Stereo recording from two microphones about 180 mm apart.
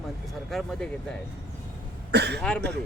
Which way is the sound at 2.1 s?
65° right (ahead or behind).